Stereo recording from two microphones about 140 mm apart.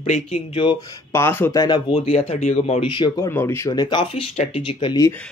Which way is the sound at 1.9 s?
45° left (ahead or behind).